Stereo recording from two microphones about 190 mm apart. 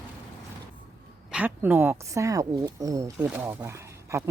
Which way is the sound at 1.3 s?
10° right (ahead or behind).